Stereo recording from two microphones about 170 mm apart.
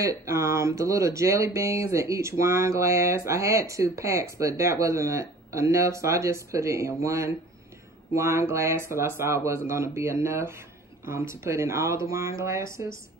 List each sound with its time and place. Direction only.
0.0 s speech: 20° right (ahead or behind)